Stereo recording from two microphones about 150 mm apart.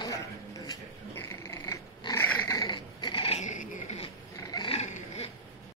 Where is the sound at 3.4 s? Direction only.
55° left (ahead or behind).